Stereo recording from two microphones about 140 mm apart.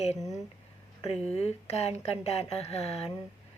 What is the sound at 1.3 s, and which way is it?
Speech, 50° left (ahead or behind).